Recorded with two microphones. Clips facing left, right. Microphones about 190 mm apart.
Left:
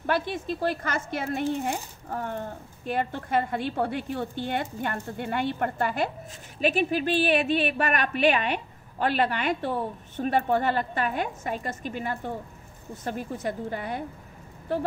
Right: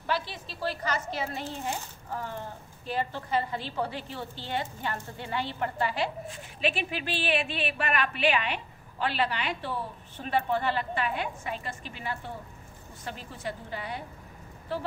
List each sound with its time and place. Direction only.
0.0 s speech: 55° left (ahead or behind)